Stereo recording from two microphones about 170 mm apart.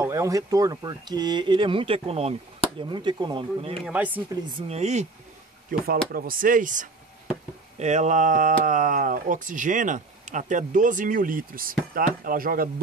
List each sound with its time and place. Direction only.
0.0 s speech: 20° right (ahead or behind)
3.8 s speech: 10° right (ahead or behind)
4.5 s speech: 35° right (ahead or behind)
5.7 s speech: 60° right (ahead or behind)